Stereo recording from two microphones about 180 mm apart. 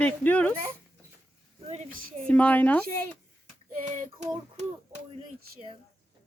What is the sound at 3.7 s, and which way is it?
Child singing, 40° right (ahead or behind).